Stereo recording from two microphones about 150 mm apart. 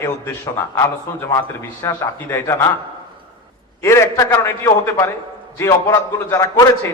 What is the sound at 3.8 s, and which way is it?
A man's voice, 20° left (ahead or behind).